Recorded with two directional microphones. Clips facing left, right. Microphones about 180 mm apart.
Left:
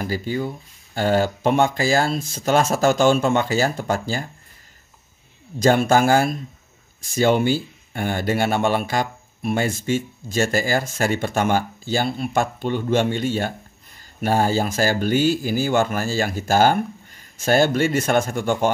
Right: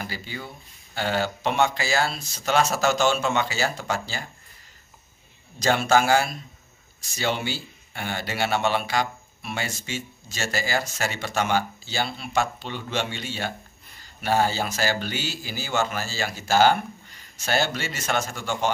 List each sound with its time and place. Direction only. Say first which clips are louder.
0.0 s speech: left 11 dB; 45° left (ahead or behind)
5.6 s speech: left 5 dB; 50° left (ahead or behind)